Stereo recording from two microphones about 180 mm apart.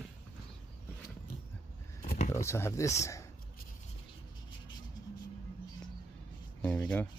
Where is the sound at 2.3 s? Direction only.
15° left (ahead or behind).